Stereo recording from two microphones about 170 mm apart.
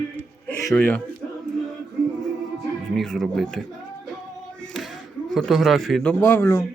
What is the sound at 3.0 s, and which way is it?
Speech, centre (ahead or behind).